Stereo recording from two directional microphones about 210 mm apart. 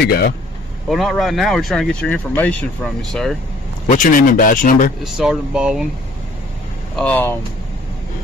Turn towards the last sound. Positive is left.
turn(degrees=5)  # may be behind; listen again after turning